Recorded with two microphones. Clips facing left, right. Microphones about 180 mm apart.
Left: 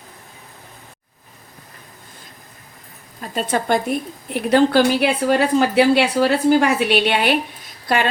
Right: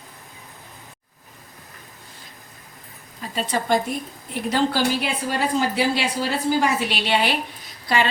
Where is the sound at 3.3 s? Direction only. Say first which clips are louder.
Left 2 dB; 50° left (ahead or behind).